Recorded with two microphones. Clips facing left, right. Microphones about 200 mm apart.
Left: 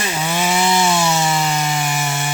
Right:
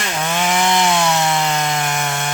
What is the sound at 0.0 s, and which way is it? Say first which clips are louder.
Wood: even; 10° left (ahead or behind).